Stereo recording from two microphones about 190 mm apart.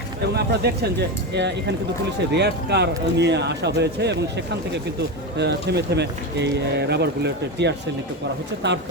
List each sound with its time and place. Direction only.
0.3 s speech: 60° right (ahead or behind)
5.4 s speech: 60° right (ahead or behind)